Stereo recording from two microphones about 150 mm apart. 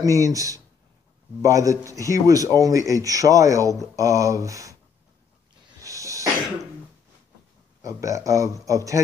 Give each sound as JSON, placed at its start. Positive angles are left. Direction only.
{"t": 0.0, "sound": "speech", "side_deg": -20}
{"t": 5.8, "sound": "a sound", "side_deg": -20}
{"t": 7.8, "sound": "speech", "side_deg": -20}